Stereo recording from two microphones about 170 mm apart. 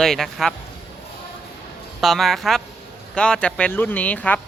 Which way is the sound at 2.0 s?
Centre (ahead or behind).